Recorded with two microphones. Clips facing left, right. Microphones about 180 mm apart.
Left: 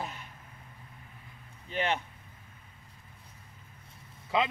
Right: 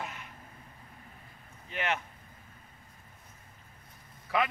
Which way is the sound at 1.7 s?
30° left (ahead or behind).